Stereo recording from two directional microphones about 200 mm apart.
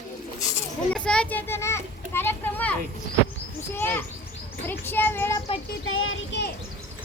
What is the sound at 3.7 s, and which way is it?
A child's voice, 10° left (ahead or behind).